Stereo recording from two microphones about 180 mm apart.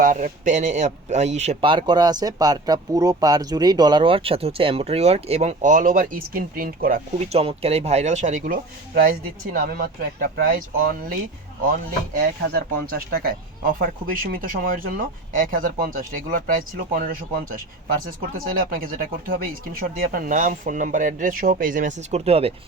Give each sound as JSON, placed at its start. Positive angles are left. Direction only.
{"t": 0.0, "sound": "a man's voice", "side_deg": -50}
{"t": 7.3, "sound": "a man's voice", "side_deg": -35}
{"t": 12.1, "sound": "speech", "side_deg": -55}